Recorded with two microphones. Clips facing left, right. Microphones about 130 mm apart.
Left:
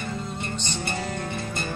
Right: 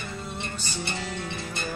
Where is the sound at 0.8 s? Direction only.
45° left (ahead or behind).